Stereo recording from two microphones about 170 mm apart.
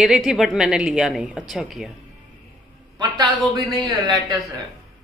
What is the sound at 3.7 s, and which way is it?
Speech, 25° right (ahead or behind).